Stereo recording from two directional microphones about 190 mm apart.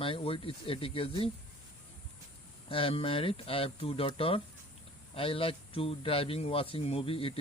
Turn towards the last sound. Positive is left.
turn(degrees=30)  # may be behind; listen again after turning